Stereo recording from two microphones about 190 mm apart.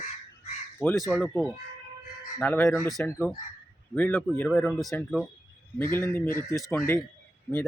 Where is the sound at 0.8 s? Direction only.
10° left (ahead or behind).